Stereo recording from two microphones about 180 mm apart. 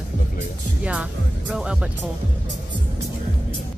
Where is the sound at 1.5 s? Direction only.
5° right (ahead or behind).